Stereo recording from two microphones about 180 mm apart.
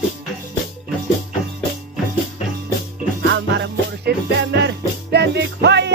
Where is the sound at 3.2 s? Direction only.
75° right (ahead or behind).